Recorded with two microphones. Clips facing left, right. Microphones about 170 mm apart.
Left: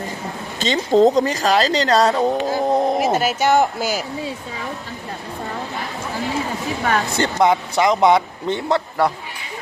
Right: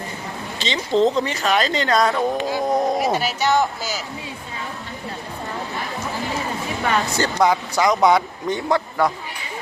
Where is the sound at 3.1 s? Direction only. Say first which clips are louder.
Left 3 dB; 50° left (ahead or behind).